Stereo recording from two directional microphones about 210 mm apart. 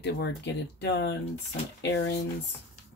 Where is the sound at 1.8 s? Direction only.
55° left (ahead or behind).